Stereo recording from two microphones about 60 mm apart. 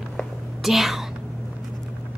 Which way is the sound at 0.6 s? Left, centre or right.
Centre.